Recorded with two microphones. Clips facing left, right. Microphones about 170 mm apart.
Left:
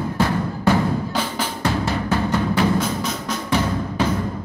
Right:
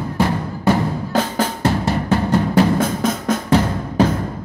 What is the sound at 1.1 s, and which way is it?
Drum, 45° right (ahead or behind).